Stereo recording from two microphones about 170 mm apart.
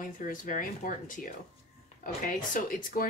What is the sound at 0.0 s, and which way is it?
Speech, 50° left (ahead or behind).